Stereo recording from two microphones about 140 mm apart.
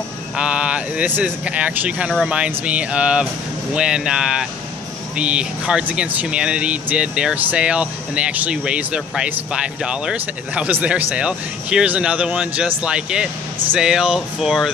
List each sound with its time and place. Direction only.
0.4 s speech: 5° right (ahead or behind)